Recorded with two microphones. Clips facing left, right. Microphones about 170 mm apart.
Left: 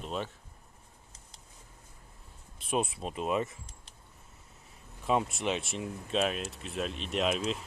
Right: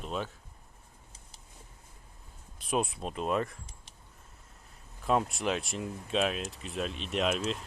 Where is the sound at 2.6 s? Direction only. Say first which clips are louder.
Even; centre (ahead or behind).